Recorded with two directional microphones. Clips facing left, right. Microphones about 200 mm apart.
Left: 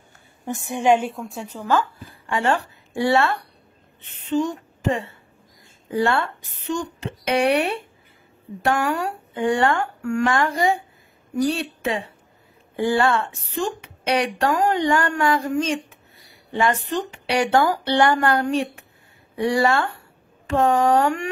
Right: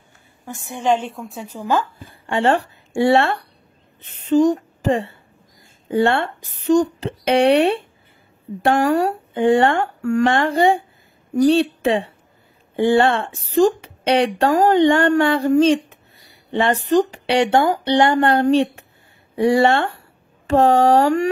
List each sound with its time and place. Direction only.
0.5 s a woman's voice: 15° left (ahead or behind); by 1.9 s 15° right (ahead or behind)
2.0 s speech: 30° right (ahead or behind)
4.3 s speech: 40° right (ahead or behind)
17.3 s speech: 25° right (ahead or behind)